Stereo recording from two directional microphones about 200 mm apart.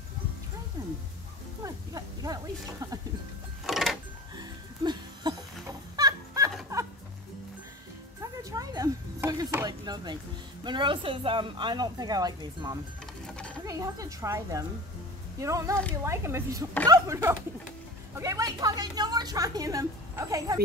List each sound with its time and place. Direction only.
0.8 s music: 20° right (ahead or behind)
1.6 s a woman's voice: 20° right (ahead or behind)
3.6 s music: centre (ahead or behind)
4.4 s music: 20° right (ahead or behind)
8.2 s a sound: 15° right (ahead or behind)
10.6 s a woman's voice: 25° right (ahead or behind)